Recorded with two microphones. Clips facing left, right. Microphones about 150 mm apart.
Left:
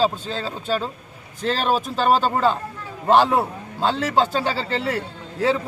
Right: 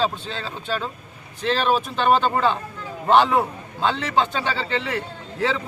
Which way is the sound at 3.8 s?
40° left (ahead or behind).